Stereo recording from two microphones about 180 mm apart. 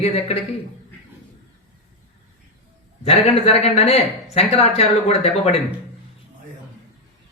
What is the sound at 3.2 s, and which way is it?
Speech, 35° left (ahead or behind).